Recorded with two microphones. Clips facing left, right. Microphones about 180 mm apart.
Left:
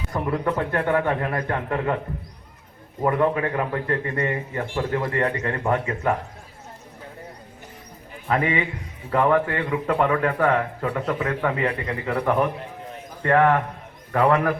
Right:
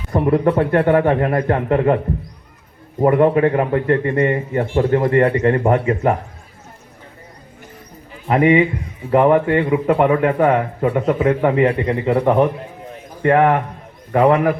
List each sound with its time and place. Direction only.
0.1 s speech: 30° right (ahead or behind)
3.0 s a man's voice: 30° right (ahead or behind)
8.3 s a man's voice: 25° right (ahead or behind)